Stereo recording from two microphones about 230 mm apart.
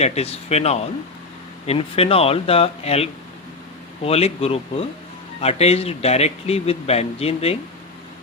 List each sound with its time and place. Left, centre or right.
0.0 s a man's voice: left